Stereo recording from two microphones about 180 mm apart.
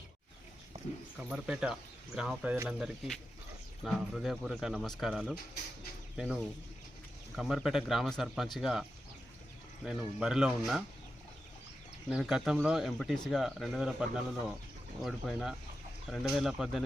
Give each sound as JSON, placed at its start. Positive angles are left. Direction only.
{"t": 1.2, "sound": "speech", "side_deg": -5}
{"t": 12.0, "sound": "speech", "side_deg": 0}